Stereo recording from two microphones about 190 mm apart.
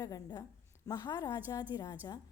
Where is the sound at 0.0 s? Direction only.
20° left (ahead or behind).